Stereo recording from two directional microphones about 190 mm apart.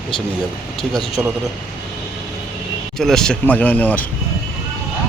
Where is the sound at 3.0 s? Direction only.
Centre (ahead or behind).